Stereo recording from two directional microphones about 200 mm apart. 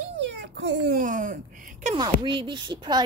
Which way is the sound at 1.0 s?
40° right (ahead or behind).